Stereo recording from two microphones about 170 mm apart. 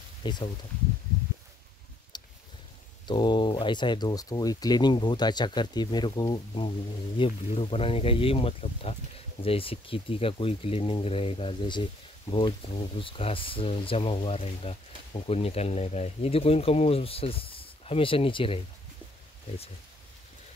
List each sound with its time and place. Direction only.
0.2 s speech: 25° left (ahead or behind)
2.1 s a sound: 25° left (ahead or behind)
3.1 s speech: 25° left (ahead or behind)